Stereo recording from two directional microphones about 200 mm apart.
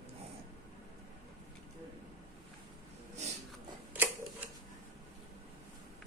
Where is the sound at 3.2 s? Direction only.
35° right (ahead or behind).